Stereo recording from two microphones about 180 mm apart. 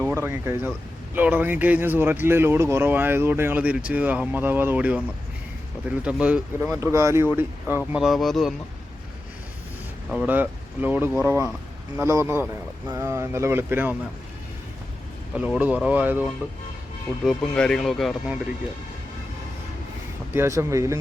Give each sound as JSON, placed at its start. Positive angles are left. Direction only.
{"t": 0.0, "sound": "speech", "side_deg": -15}
{"t": 7.9, "sound": "speech", "side_deg": 0}
{"t": 10.1, "sound": "speech", "side_deg": -5}
{"t": 15.4, "sound": "speech", "side_deg": -10}
{"t": 17.2, "sound": "speech", "side_deg": 5}
{"t": 20.3, "sound": "speech", "side_deg": -15}